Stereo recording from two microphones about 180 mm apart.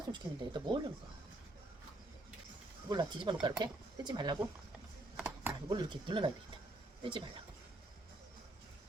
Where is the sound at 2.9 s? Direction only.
25° right (ahead or behind).